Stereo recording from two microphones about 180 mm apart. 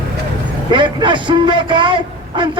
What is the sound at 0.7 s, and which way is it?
A man's voice, 25° right (ahead or behind).